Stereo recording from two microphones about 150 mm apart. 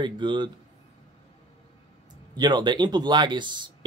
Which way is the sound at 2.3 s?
30° right (ahead or behind).